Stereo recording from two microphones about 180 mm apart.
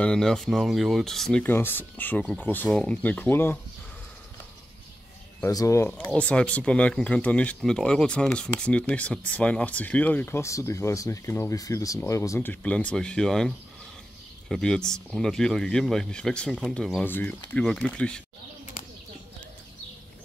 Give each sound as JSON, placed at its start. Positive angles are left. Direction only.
{"t": 0.0, "sound": "speech", "side_deg": 5}
{"t": 5.4, "sound": "speech", "side_deg": 20}
{"t": 14.5, "sound": "speech", "side_deg": 5}